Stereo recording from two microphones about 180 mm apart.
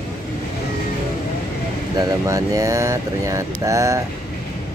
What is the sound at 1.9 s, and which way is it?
Speech, 20° right (ahead or behind).